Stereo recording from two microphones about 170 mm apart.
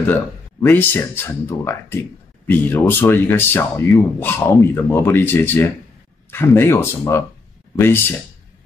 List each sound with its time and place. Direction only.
0.1 s speech: 10° left (ahead or behind)